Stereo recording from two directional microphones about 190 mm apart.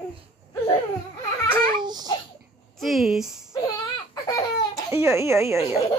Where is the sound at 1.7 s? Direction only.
20° right (ahead or behind).